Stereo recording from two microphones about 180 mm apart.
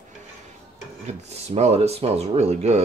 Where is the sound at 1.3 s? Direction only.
35° right (ahead or behind).